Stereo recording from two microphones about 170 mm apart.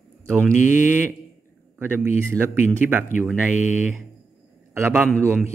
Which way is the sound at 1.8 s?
15° right (ahead or behind).